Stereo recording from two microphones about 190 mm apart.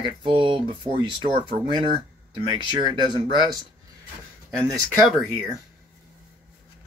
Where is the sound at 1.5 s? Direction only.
40° right (ahead or behind).